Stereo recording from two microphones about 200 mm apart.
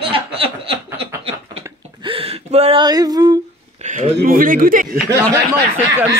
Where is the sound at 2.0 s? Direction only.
30° right (ahead or behind).